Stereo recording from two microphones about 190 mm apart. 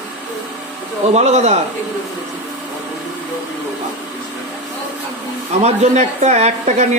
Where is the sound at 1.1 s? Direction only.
35° right (ahead or behind).